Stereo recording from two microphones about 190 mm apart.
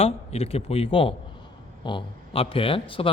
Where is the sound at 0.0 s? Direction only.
30° left (ahead or behind).